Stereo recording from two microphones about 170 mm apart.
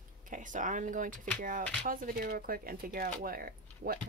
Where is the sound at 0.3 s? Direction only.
50° right (ahead or behind).